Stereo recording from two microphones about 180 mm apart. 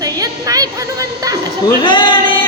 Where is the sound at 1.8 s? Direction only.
25° left (ahead or behind).